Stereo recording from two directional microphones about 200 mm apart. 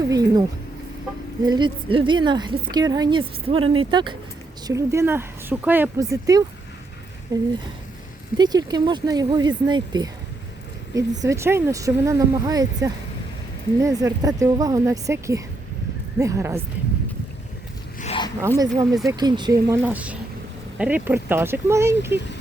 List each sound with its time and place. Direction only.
0.1 s a sound: 20° right (ahead or behind)
1.4 s speech: 20° right (ahead or behind)
11.2 s speech: 15° right (ahead or behind)
18.0 s zipper: 30° left (ahead or behind)
18.4 s speech: 20° right (ahead or behind)